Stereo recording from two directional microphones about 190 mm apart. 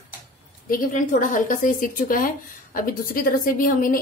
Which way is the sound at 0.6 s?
45° left (ahead or behind).